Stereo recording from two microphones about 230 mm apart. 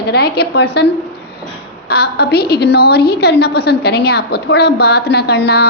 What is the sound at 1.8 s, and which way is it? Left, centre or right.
A woman's voice, left.